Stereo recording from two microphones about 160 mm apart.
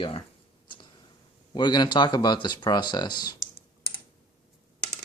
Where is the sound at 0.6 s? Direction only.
30° left (ahead or behind).